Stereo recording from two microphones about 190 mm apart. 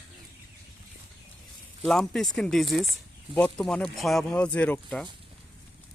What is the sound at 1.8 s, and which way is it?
Speech, 5° left (ahead or behind).